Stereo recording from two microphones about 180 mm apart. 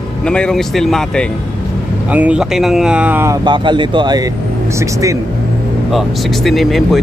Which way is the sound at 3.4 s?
25° right (ahead or behind).